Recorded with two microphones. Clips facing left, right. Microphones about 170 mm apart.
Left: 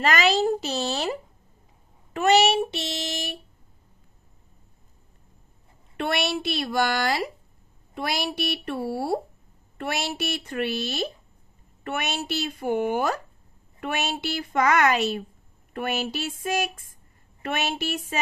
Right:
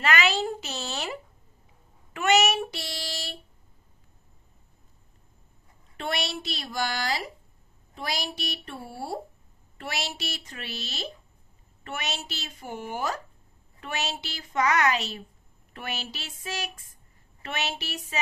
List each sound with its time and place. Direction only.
0.0 s speech: 40° left (ahead or behind)
2.1 s child singing: 35° left (ahead or behind)
5.9 s a woman's voice: 60° left (ahead or behind)